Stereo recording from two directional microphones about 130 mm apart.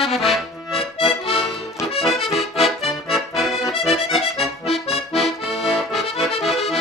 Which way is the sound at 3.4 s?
Centre (ahead or behind).